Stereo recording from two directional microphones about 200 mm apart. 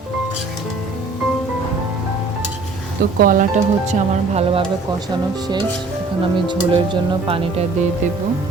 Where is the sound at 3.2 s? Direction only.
40° right (ahead or behind).